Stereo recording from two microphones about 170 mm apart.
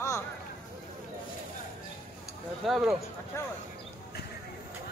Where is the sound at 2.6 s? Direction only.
Centre (ahead or behind).